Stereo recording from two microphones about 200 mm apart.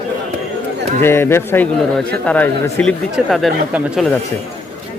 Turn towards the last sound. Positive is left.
turn(degrees=0)  # may be behind; listen again after turning